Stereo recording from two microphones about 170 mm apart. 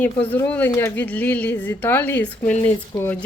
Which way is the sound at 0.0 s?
10° left (ahead or behind).